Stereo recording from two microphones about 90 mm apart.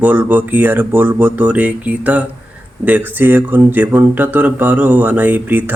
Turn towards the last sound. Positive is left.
turn(degrees=-20)  # may be behind; listen again after turning